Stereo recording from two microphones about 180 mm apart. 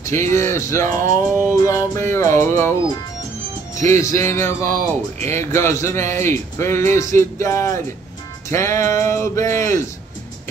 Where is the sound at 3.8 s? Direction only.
15° left (ahead or behind).